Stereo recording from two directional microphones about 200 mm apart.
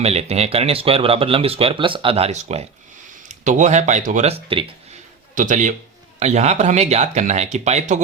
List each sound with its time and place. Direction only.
0.0 s speech: 30° right (ahead or behind)
5.3 s a man's voice: 40° right (ahead or behind)